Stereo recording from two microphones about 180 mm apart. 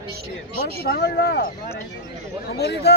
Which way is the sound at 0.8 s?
65° left (ahead or behind).